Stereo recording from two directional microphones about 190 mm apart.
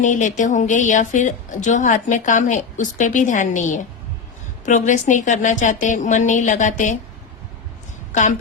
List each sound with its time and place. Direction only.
0.0 s a woman's voice: 40° left (ahead or behind)